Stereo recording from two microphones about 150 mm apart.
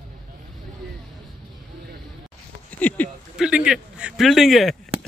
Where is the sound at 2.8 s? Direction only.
10° left (ahead or behind).